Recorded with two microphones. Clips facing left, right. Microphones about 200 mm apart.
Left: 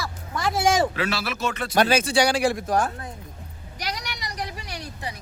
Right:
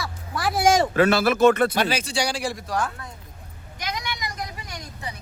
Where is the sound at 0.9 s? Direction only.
50° right (ahead or behind).